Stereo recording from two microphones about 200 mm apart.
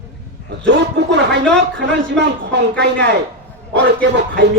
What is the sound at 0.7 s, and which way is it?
Speech, 60° right (ahead or behind).